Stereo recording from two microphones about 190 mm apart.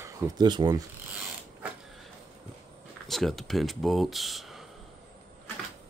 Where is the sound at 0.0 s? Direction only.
20° right (ahead or behind).